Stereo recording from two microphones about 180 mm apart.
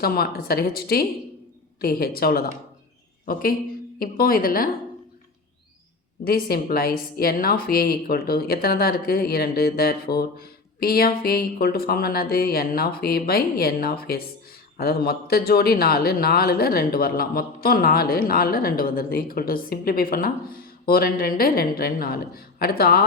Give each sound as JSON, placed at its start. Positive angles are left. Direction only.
{"t": 0.0, "sound": "speech", "side_deg": 55}
{"t": 4.0, "sound": "a woman's voice", "side_deg": 55}
{"t": 6.2, "sound": "speech", "side_deg": 55}